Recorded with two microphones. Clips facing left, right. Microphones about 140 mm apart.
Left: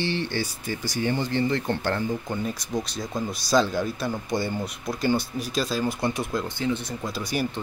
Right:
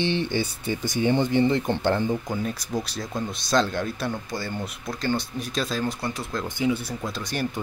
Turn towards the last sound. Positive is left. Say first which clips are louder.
# left 1 dB
turn(degrees=5)  # may be behind; listen again after turning